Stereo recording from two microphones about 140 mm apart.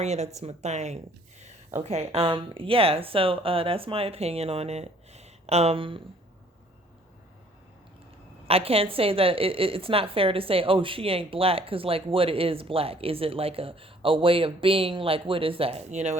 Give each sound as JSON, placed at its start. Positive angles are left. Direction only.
{"t": 0.0, "sound": "speech", "side_deg": -50}
{"t": 8.4, "sound": "a woman's voice", "side_deg": -45}